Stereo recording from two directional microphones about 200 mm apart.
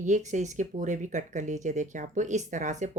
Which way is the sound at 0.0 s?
35° right (ahead or behind).